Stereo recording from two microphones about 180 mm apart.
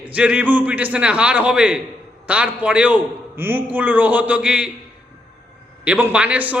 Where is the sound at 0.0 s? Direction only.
10° right (ahead or behind).